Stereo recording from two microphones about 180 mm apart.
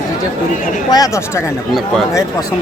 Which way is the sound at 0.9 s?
20° left (ahead or behind).